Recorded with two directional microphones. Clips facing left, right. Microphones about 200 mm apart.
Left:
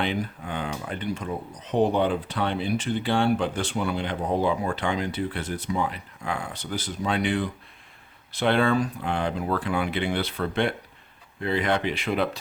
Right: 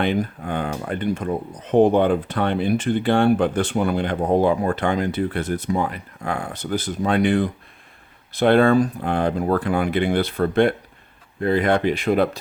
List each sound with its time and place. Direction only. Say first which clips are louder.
0.0 s speech: right 6 dB; 50° right (ahead or behind)